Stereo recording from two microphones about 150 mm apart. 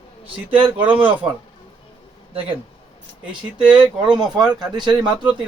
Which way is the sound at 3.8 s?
5° right (ahead or behind).